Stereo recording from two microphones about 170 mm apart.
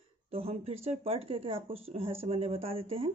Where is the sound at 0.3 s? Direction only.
35° right (ahead or behind).